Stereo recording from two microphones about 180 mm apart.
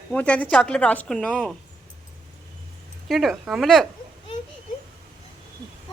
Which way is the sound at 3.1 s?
Centre (ahead or behind).